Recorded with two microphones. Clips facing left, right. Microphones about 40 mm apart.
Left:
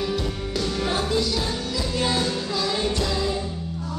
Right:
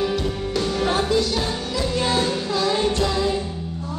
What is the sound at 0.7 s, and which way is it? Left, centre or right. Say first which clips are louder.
Music: right 4 dB; centre.